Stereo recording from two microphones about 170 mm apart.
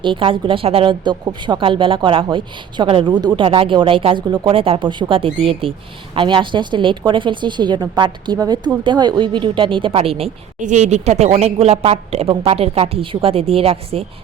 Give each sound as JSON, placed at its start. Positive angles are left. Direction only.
{"t": 0.0, "sound": "a woman's voice", "side_deg": -30}
{"t": 10.6, "sound": "a woman's voice", "side_deg": -45}